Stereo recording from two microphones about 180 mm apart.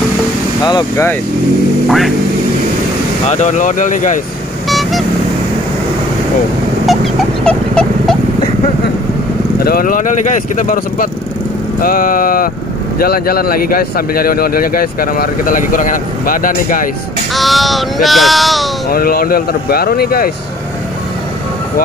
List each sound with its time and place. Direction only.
0.7 s speech: 20° left (ahead or behind)
1.9 s speech: centre (ahead or behind)
3.3 s speech: 40° left (ahead or behind)
4.6 s vehicle: centre (ahead or behind)
7.4 s dog: 5° left (ahead or behind)
9.6 s speech: 55° left (ahead or behind)
17.3 s speech: centre (ahead or behind)
18.9 s speech: 55° left (ahead or behind)